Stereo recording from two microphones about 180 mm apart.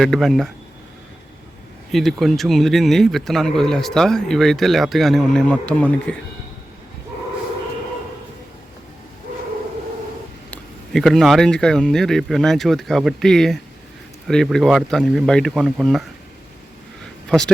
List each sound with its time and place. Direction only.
0.0 s speech: centre (ahead or behind)
1.9 s speech: centre (ahead or behind)
10.5 s speech: centre (ahead or behind)
17.2 s speech: 5° left (ahead or behind)